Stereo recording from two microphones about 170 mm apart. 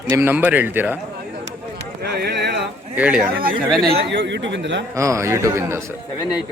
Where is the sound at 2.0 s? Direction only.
70° right (ahead or behind).